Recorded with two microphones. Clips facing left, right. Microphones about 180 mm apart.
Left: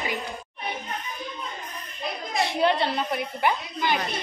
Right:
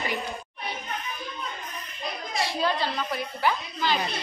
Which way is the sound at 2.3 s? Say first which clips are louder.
Left 4 dB; 20° left (ahead or behind).